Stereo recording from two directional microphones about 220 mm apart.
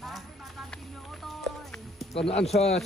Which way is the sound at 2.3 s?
30° left (ahead or behind).